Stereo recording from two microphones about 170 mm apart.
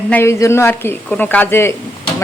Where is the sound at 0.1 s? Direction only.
15° left (ahead or behind).